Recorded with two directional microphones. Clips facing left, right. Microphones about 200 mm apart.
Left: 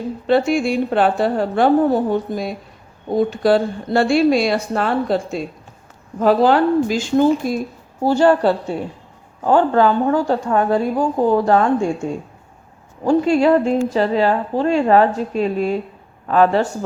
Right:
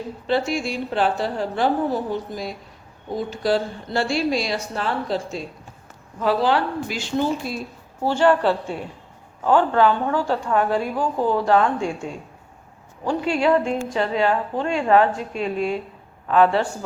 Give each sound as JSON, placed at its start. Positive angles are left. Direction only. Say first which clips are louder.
{"t": 0.3, "sound": "a woman's voice", "louder": "left 7 dB", "side_deg": 55}
{"t": 13.1, "sound": "a woman's voice", "louder": "left 6 dB", "side_deg": 40}